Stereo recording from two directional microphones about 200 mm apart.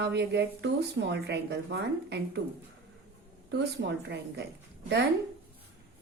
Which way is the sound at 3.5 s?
60° right (ahead or behind).